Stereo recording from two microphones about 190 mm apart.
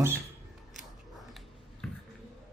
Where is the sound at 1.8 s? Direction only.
5° left (ahead or behind).